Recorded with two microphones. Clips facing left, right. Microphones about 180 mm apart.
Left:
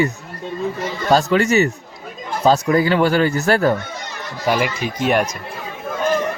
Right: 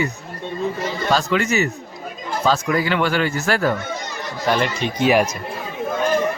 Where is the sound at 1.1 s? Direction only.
40° left (ahead or behind).